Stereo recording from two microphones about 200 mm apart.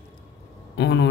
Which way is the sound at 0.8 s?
65° left (ahead or behind).